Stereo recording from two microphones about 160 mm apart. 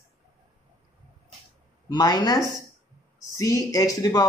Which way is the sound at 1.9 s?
25° left (ahead or behind).